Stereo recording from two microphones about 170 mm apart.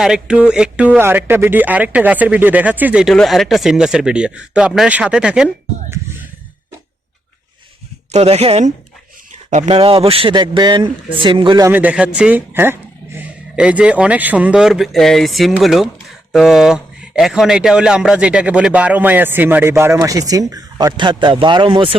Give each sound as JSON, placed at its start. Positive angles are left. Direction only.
{"t": 0.0, "sound": "speech", "side_deg": -5}
{"t": 8.1, "sound": "speech", "side_deg": -40}
{"t": 11.7, "sound": "speech", "side_deg": -10}